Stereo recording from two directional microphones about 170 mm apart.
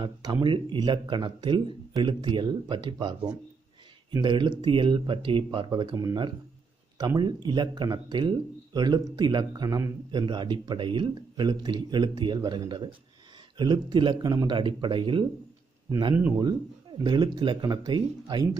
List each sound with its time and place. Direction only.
0.0 s speech: 30° right (ahead or behind)
17.0 s speech: 25° right (ahead or behind)